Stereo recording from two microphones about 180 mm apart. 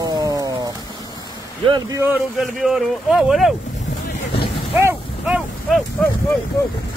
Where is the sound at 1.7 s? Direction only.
15° right (ahead or behind).